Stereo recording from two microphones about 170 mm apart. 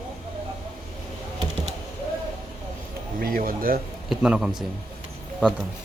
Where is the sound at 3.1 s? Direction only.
60° right (ahead or behind).